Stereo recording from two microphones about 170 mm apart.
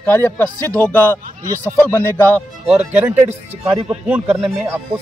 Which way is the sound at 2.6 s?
5° right (ahead or behind).